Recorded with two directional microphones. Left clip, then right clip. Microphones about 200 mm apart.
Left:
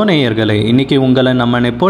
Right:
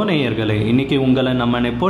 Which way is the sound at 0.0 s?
30° left (ahead or behind).